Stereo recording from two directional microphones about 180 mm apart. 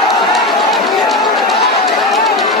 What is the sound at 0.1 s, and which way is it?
Run, centre (ahead or behind).